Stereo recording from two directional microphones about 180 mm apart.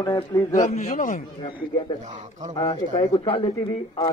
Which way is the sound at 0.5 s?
40° left (ahead or behind).